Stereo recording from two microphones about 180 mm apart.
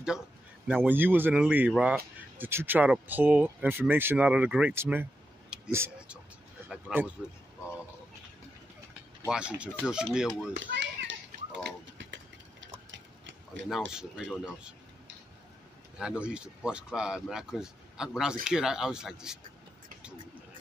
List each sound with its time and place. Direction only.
0.7 s speech: 10° right (ahead or behind)
9.3 s speech: 5° right (ahead or behind)
10.5 s children playing: 80° right
12.0 s vehicle: 90° right
12.9 s tick-tock: 90° right
13.7 s speech: centre (ahead or behind)
16.0 s speech: 5° right (ahead or behind)